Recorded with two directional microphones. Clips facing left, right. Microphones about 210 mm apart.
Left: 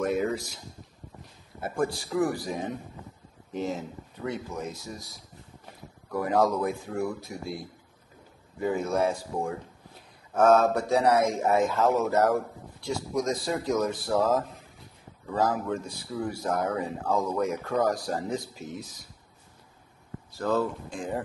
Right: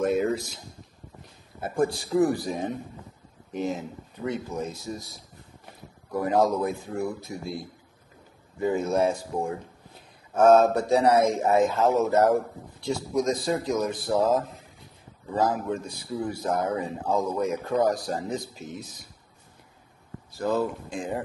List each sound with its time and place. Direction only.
0.0 s a sound: 25° right (ahead or behind)
1.6 s speech: 25° right (ahead or behind)
6.1 s speech: 25° right (ahead or behind)
8.6 s speech: 25° right (ahead or behind)
20.3 s speech: 15° right (ahead or behind)